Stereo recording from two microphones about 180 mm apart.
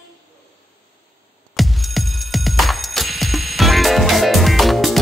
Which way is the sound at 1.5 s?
Centre (ahead or behind).